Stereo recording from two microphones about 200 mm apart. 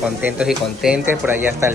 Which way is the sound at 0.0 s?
5° right (ahead or behind).